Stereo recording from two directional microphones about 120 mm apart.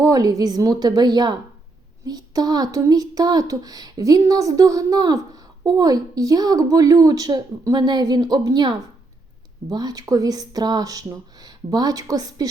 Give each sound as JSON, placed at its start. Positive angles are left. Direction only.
{"t": 0.0, "sound": "speech", "side_deg": -30}